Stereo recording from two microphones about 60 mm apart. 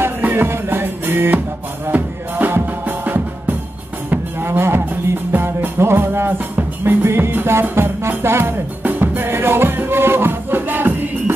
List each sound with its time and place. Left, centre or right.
0.2 s music: right
4.1 s cattle: right
5.3 s music: right